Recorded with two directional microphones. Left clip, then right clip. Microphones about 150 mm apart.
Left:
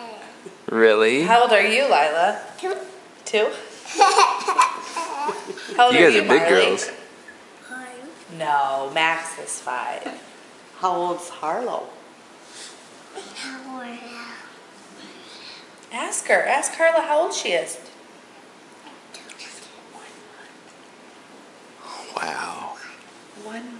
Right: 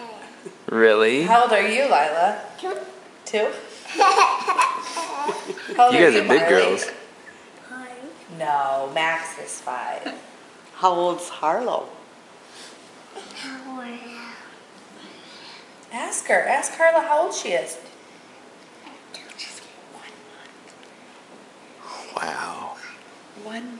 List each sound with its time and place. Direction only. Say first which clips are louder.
0.7 s speech: even; 5° left (ahead or behind)
7.7 s a sound: left 2 dB; 10° left (ahead or behind)
8.4 s speech: left 1 dB; 15° left (ahead or behind)
10.8 s speech: right 3 dB; 15° right (ahead or behind)
13.1 s a sound: left 1 dB; 15° left (ahead or behind)
15.4 s a woman's voice: left 1 dB; 15° left (ahead or behind)
21.8 s whispering: even; centre (ahead or behind)